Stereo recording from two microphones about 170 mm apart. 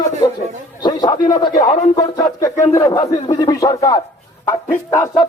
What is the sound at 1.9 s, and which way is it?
Speech, 20° left (ahead or behind).